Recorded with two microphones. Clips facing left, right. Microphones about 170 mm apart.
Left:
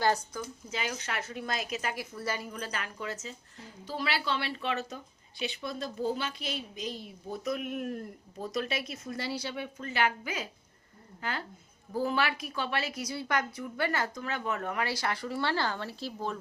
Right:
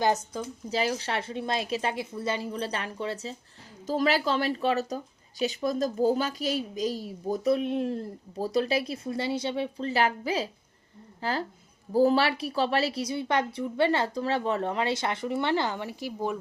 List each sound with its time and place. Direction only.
0.0 s a woman's voice: 20° right (ahead or behind)
0.7 s a woman's voice: 35° right (ahead or behind)
3.8 s a woman's voice: 45° right (ahead or behind); by 16.4 s 15° right (ahead or behind)